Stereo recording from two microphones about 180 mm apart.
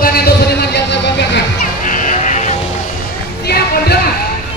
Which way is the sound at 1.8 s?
45° left (ahead or behind).